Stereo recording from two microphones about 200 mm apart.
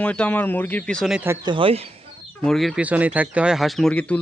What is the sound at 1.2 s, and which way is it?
Speech, 20° right (ahead or behind).